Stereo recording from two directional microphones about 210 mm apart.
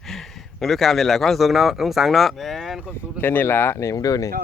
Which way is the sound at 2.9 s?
10° left (ahead or behind).